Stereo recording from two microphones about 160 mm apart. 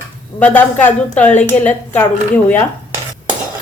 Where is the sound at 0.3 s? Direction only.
10° left (ahead or behind).